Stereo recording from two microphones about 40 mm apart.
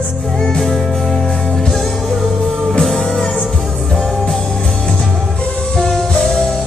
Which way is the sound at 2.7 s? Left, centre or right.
Centre.